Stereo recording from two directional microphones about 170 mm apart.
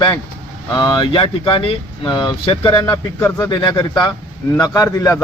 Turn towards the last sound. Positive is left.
turn(degrees=20)  # may be behind; listen again after turning